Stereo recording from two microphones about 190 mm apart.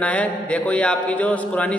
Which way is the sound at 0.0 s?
5° left (ahead or behind).